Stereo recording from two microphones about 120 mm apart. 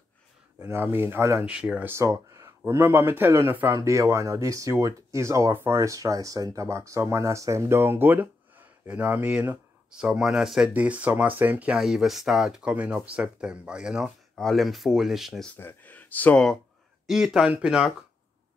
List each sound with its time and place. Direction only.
0.6 s speech: 20° right (ahead or behind)
1.4 s speech: 10° right (ahead or behind)
15.5 s speech: 15° left (ahead or behind)
17.0 s speech: 5° right (ahead or behind)